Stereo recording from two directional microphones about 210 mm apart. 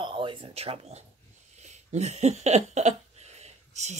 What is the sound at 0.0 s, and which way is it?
Speech, 25° right (ahead or behind).